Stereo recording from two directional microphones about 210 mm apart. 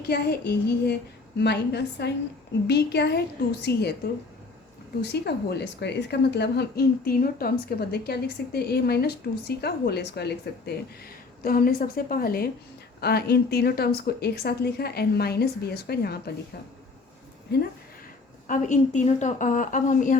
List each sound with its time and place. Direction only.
0.1 s a woman's voice: 50° left (ahead or behind)
5.0 s a woman's voice: 50° left (ahead or behind)
18.4 s a woman's voice: 35° left (ahead or behind)